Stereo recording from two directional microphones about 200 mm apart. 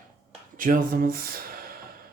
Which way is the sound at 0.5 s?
45° right (ahead or behind).